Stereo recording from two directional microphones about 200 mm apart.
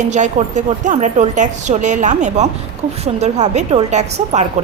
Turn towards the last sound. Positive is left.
turn(degrees=-35)  # may be behind; listen again after turning